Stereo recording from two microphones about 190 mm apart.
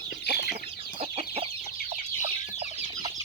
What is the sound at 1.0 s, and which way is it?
Chicken, 30° right (ahead or behind).